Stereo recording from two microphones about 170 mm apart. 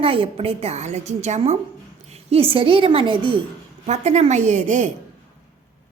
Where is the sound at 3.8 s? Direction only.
40° right (ahead or behind).